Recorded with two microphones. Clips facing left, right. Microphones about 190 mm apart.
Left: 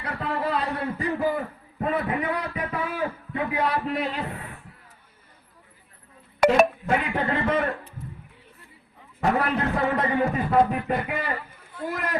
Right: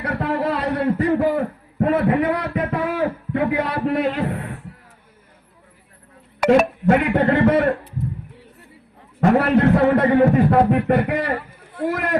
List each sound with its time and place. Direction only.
0.0 s a sound: 65° right (ahead or behind)
7.0 s a man's voice: 70° right (ahead or behind)
9.3 s a man's voice: 70° right (ahead or behind)